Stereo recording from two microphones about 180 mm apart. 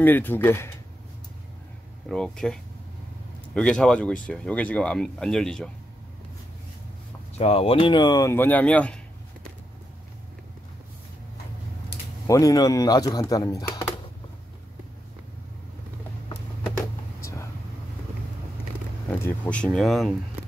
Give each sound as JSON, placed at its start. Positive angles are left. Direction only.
{"t": 0.0, "sound": "speech", "side_deg": 10}
{"t": 2.0, "sound": "speech", "side_deg": 5}
{"t": 7.3, "sound": "speech", "side_deg": 35}
{"t": 12.3, "sound": "speech", "side_deg": 20}
{"t": 17.2, "sound": "vehicle", "side_deg": 15}
{"t": 19.2, "sound": "speech", "side_deg": 10}